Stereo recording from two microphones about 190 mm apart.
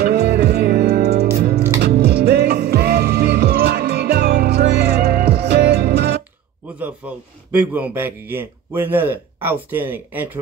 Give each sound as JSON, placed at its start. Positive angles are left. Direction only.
{"t": 0.0, "sound": "music", "side_deg": -55}
{"t": 6.8, "sound": "a man's voice", "side_deg": -10}